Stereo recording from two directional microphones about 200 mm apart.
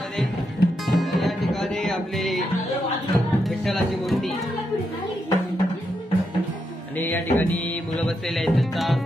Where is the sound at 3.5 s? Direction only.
Centre (ahead or behind).